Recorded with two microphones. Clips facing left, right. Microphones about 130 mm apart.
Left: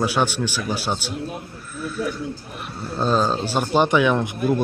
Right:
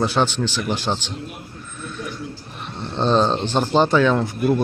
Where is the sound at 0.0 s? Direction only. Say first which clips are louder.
Right 1 dB; 10° left (ahead or behind).